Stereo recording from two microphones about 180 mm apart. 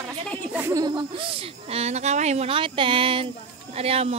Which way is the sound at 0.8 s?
30° right (ahead or behind).